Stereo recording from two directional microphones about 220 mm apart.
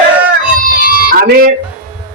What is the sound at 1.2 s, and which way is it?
Speech, 45° right (ahead or behind).